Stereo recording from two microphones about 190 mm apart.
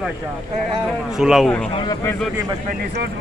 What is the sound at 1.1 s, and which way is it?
Speech, centre (ahead or behind).